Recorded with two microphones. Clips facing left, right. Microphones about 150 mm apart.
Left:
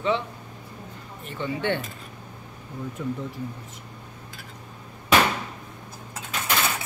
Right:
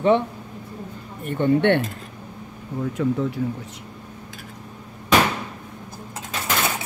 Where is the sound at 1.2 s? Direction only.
55° right (ahead or behind).